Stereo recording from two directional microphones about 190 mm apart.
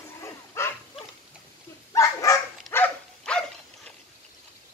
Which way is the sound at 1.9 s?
15° left (ahead or behind).